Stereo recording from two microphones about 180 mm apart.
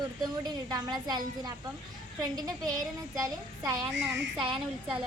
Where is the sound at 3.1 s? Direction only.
20° right (ahead or behind).